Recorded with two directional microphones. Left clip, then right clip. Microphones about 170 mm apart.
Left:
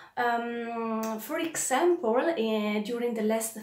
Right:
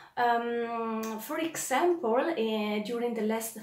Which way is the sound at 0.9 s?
20° left (ahead or behind).